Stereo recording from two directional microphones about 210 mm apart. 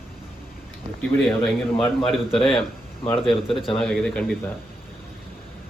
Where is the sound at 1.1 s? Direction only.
5° left (ahead or behind).